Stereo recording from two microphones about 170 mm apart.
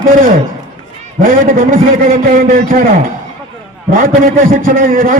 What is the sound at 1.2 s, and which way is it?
A man's voice, 50° right (ahead or behind).